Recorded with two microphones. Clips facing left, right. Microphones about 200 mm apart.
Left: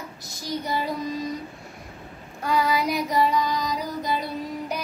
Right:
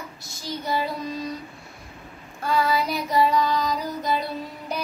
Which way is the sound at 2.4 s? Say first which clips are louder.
Even; 15° left (ahead or behind).